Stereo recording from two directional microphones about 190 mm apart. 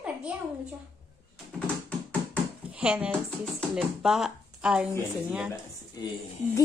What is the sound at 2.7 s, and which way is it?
Speech, 5° right (ahead or behind).